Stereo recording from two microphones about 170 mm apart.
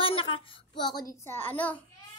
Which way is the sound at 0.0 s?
30° left (ahead or behind).